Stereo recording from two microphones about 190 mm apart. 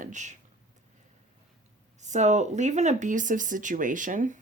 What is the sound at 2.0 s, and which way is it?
Speech, 40° right (ahead or behind).